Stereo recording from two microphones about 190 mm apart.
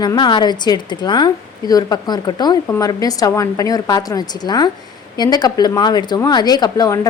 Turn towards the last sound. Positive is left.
turn(degrees=20)  # may be behind; listen again after turning